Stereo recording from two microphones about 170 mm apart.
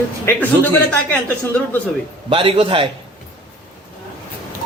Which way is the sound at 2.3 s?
30° right (ahead or behind).